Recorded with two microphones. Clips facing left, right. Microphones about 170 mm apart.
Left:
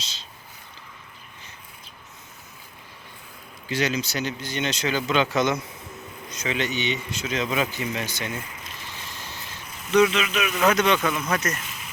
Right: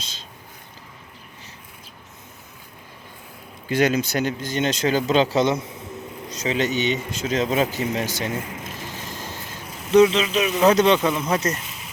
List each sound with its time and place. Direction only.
3.7 s speech: 50° right (ahead or behind)
9.9 s speech: 30° right (ahead or behind)